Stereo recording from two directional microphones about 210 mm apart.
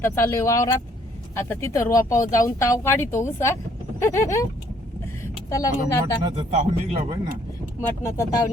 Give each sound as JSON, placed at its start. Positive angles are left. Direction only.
{"t": 0.0, "sound": "speech", "side_deg": 10}
{"t": 5.5, "sound": "speech", "side_deg": 15}
{"t": 6.2, "sound": "speech", "side_deg": -30}
{"t": 7.8, "sound": "speech", "side_deg": 15}